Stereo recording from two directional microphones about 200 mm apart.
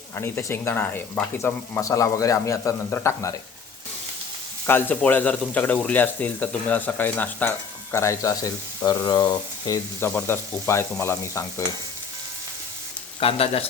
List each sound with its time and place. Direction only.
0.2 s speech: 10° left (ahead or behind)
4.6 s speech: 10° left (ahead or behind)
13.1 s speech: 30° left (ahead or behind)